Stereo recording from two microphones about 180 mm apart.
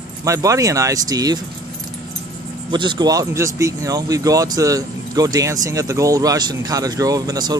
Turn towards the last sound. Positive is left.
turn(degrees=-20)  # may be behind; listen again after turning